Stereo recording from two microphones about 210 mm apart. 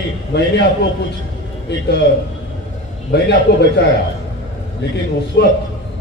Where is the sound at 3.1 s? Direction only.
55° left (ahead or behind).